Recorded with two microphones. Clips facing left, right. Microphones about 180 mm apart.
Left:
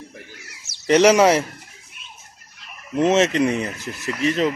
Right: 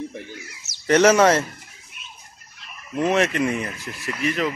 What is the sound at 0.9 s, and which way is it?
Speech, 15° left (ahead or behind).